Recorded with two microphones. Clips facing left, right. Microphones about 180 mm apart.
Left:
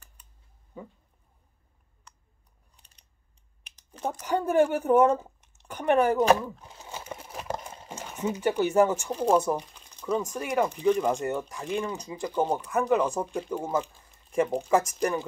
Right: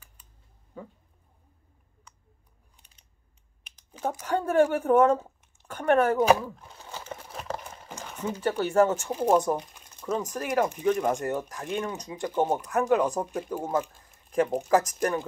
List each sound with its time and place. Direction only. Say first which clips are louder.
3.9 s a sound: right 1 dB; 5° right (ahead or behind)
4.4 s speech: even; 5° left (ahead or behind)
5.2 s a sound: left 1 dB; 5° right (ahead or behind)
5.7 s speech: even; 10° left (ahead or behind)
6.2 s speech: even; 5° right (ahead or behind)
6.8 s a sound: even; 15° left (ahead or behind)
7.6 s horse: left 1 dB; 20° left (ahead or behind)
8.1 s speech: left 2 dB; 10° left (ahead or behind)
9.0 s speech: even; 5° right (ahead or behind)